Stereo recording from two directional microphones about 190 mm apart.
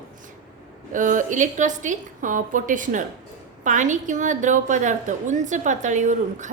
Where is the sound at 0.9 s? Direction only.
40° right (ahead or behind).